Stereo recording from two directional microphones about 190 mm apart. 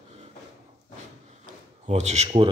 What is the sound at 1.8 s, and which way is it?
Speech, 35° right (ahead or behind).